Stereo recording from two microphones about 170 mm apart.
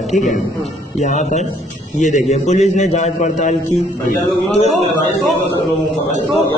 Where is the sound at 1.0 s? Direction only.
45° left (ahead or behind).